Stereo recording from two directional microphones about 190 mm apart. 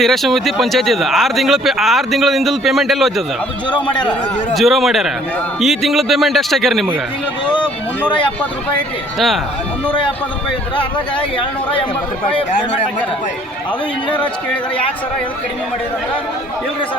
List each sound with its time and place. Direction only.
0.0 s speech: centre (ahead or behind)
4.5 s speech: centre (ahead or behind)
9.1 s speech: centre (ahead or behind)
11.3 s speech: 25° left (ahead or behind)